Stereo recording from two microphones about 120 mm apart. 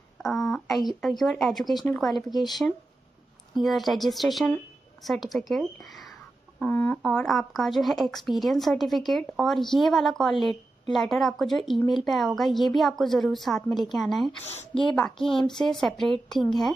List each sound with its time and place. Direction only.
0.2 s a sound: 5° left (ahead or behind)
1.0 s a woman's voice: centre (ahead or behind)
3.5 s a woman's voice: centre (ahead or behind)
6.6 s speech: 15° left (ahead or behind)
7.0 s a woman's voice: 5° left (ahead or behind)